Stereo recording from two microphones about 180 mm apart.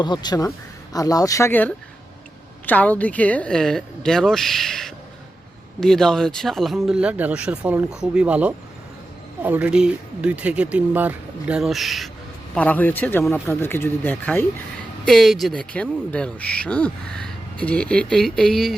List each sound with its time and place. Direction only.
0.0 s speech: 25° left (ahead or behind); by 18.8 s centre (ahead or behind)